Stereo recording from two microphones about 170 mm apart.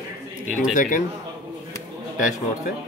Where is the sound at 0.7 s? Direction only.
50° left (ahead or behind).